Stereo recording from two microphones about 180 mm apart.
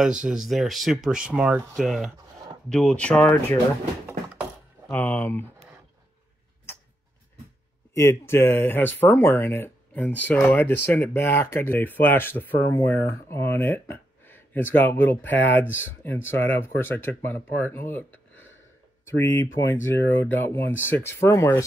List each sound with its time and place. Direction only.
0.0 s speech: 5° right (ahead or behind)
4.9 s speech: 10° left (ahead or behind)
7.9 s speech: 15° left (ahead or behind)
18.3 s a sound: 90° left
19.0 s speech: 10° left (ahead or behind)